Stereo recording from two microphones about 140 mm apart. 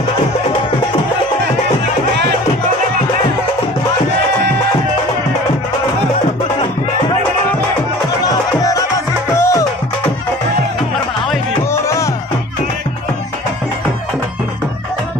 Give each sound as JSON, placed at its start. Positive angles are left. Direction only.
{"t": 8.3, "sound": "music", "side_deg": 25}
{"t": 11.7, "sound": "music", "side_deg": 20}